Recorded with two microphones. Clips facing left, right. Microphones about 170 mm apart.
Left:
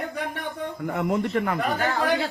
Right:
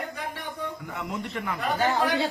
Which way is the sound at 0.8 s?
50° left (ahead or behind).